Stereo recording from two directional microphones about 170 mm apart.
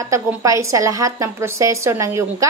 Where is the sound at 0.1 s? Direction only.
20° right (ahead or behind).